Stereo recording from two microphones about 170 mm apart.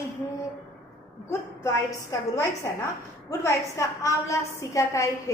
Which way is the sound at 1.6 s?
20° left (ahead or behind).